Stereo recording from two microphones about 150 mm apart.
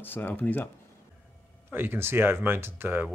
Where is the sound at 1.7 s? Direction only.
15° right (ahead or behind).